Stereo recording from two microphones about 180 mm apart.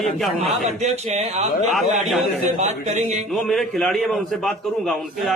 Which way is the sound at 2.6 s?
40° right (ahead or behind).